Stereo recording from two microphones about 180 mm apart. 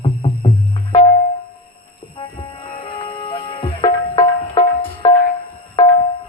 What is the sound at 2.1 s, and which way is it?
Music, 30° left (ahead or behind).